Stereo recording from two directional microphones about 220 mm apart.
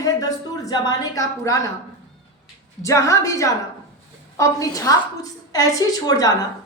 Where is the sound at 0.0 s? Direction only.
15° left (ahead or behind).